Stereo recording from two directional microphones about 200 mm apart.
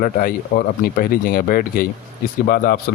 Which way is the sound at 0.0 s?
45° left (ahead or behind).